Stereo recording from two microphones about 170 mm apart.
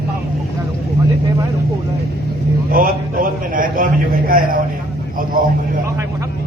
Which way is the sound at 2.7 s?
55° right (ahead or behind).